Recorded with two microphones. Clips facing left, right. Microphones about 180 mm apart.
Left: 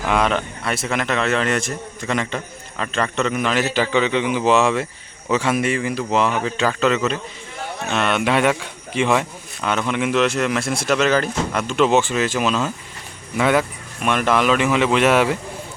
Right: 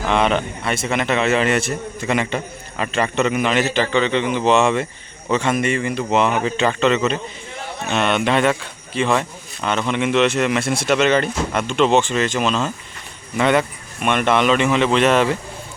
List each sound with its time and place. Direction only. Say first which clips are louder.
0.1 s a man's voice: right 1 dB; centre (ahead or behind)